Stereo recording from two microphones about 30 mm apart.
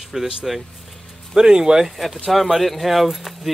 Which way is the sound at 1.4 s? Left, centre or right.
Right.